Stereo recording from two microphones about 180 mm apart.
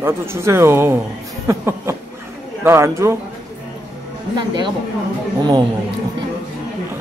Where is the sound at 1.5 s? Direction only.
15° right (ahead or behind).